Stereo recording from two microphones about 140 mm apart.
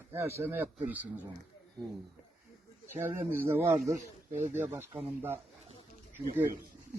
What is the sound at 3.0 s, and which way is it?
Speech, 15° right (ahead or behind).